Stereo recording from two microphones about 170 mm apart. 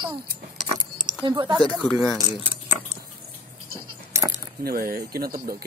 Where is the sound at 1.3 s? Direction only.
30° right (ahead or behind).